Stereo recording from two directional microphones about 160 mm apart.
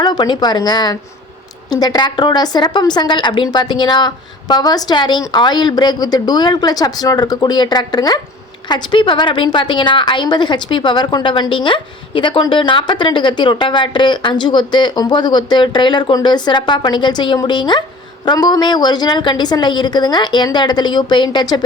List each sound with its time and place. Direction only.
0.0 s a woman's voice: 25° left (ahead or behind)